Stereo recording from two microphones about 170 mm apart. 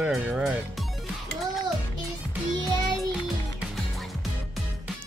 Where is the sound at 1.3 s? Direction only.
Centre (ahead or behind).